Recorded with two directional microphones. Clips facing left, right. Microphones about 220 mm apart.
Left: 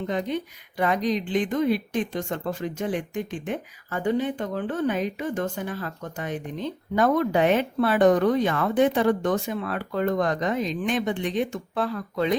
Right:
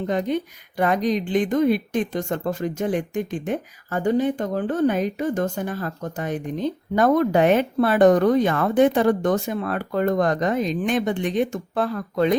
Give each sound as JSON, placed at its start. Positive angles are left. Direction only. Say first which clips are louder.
{"t": 0.1, "sound": "speech", "louder": "right 5 dB", "side_deg": -45}